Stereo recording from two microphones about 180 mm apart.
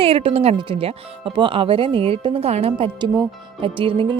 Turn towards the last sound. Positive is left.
turn(degrees=-30)  # may be behind; listen again after turning